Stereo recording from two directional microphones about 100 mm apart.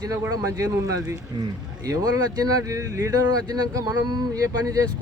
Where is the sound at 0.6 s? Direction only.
35° right (ahead or behind).